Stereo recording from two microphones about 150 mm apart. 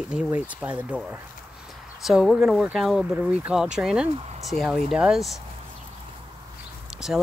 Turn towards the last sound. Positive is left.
turn(degrees=-5)  # may be behind; listen again after turning